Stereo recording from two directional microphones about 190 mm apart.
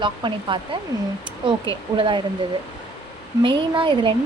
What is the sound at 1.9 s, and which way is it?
Speech, 25° right (ahead or behind).